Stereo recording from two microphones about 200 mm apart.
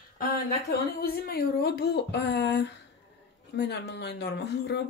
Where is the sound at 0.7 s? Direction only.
50° left (ahead or behind).